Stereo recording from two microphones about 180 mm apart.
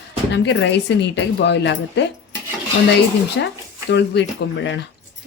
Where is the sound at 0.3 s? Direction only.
80° left.